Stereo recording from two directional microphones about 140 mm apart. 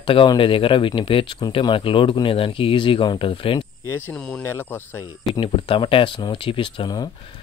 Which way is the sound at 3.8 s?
20° left (ahead or behind).